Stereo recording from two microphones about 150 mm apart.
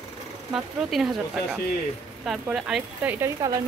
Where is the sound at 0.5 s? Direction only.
Centre (ahead or behind).